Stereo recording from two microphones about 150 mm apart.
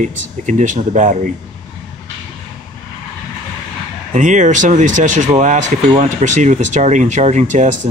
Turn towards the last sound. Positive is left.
turn(degrees=-55)  # may be behind; listen again after turning